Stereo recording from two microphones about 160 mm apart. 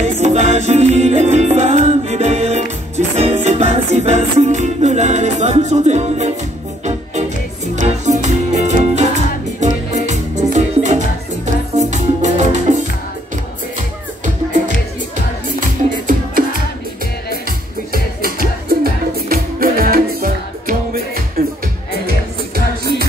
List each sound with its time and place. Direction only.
0.0 s music: 45° right (ahead or behind)
10.0 s music: 50° right (ahead or behind)
15.6 s music: 55° right (ahead or behind)
17.5 s music: 65° right (ahead or behind)
21.4 s music: 65° right (ahead or behind)